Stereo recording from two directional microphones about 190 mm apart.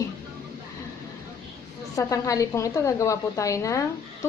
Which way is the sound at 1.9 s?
15° left (ahead or behind).